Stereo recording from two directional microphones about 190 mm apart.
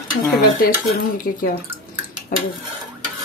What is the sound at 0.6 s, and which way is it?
Dishes, 50° left (ahead or behind).